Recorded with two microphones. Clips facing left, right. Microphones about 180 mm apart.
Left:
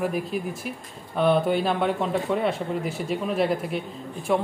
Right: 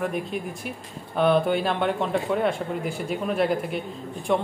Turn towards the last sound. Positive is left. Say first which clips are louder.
# even
turn(degrees=5)  # may be behind; listen again after turning